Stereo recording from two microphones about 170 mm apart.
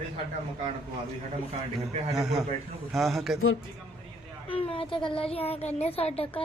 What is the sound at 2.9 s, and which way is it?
Speech, centre (ahead or behind).